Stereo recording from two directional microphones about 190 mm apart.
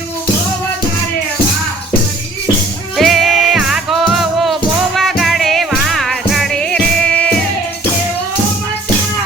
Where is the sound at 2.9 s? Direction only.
Centre (ahead or behind).